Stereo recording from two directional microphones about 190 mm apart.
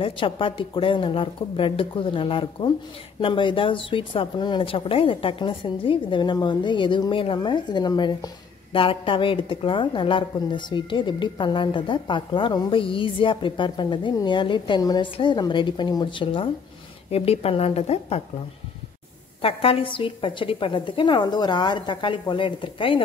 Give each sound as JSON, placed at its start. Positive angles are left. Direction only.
{"t": 0.0, "sound": "a woman's voice", "side_deg": 25}
{"t": 19.4, "sound": "a woman's voice", "side_deg": 30}